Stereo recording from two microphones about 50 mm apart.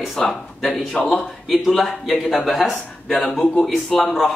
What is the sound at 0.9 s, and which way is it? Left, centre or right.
Speech, left.